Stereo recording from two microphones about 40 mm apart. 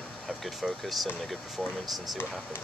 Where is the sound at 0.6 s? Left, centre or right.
Centre.